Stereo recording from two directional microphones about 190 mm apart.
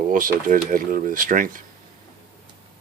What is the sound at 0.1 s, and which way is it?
Speech, 45° right (ahead or behind).